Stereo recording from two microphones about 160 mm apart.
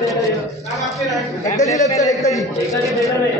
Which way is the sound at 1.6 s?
20° left (ahead or behind).